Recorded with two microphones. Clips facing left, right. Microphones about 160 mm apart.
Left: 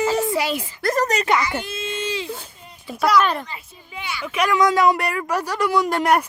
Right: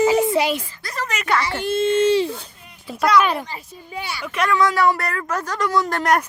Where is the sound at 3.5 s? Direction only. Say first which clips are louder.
Right 3 dB; 40° right (ahead or behind).